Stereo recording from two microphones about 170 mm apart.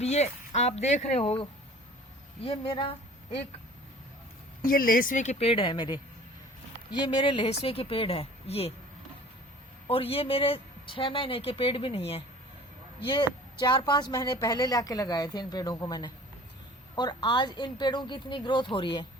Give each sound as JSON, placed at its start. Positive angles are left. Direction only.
{"t": 0.0, "sound": "speech", "side_deg": 40}
{"t": 2.4, "sound": "speech", "side_deg": 35}
{"t": 4.6, "sound": "a woman's voice", "side_deg": 55}
{"t": 9.8, "sound": "a woman's voice", "side_deg": 35}